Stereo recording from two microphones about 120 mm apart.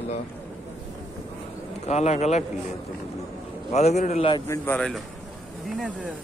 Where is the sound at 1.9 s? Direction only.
70° left (ahead or behind).